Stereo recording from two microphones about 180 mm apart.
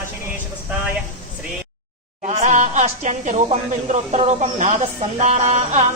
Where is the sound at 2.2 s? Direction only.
40° right (ahead or behind).